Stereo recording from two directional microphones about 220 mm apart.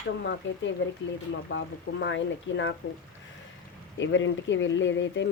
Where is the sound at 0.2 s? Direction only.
50° left (ahead or behind).